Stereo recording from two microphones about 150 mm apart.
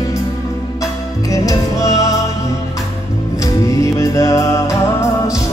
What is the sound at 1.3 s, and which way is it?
Music, 25° left (ahead or behind).